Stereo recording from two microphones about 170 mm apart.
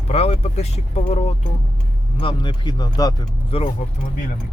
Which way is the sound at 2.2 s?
30° left (ahead or behind).